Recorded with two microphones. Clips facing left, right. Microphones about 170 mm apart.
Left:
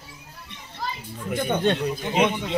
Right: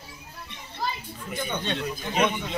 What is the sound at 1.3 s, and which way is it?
Speech, 55° left (ahead or behind).